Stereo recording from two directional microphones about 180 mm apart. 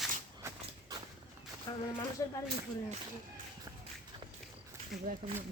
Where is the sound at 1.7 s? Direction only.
20° left (ahead or behind).